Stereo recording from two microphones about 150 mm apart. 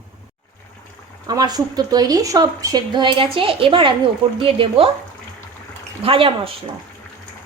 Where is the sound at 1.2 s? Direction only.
25° right (ahead or behind).